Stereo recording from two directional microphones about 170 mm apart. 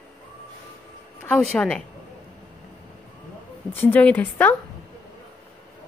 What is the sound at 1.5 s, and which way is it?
Speech, 10° left (ahead or behind).